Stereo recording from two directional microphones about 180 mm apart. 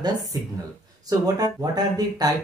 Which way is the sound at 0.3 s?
20° right (ahead or behind).